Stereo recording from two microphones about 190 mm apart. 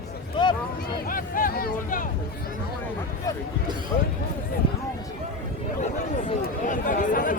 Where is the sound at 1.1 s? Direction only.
50° left (ahead or behind).